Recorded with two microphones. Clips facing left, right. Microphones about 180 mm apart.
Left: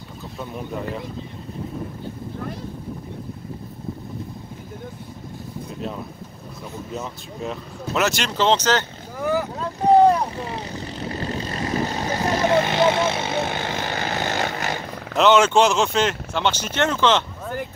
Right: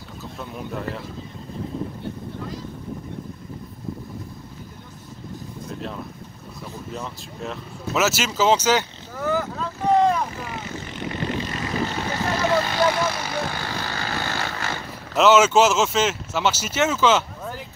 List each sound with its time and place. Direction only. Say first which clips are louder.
6.9 s speech: left 2 dB; centre (ahead or behind)
9.2 s boat: left 1 dB; 15° left (ahead or behind)
9.6 s vehicle: left 5 dB; 35° left (ahead or behind)
12.2 s vehicle: left 3 dB; 20° left (ahead or behind)
15.1 s speech: even; 5° right (ahead or behind)